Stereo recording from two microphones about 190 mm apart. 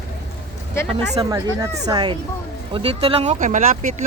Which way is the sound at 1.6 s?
20° right (ahead or behind).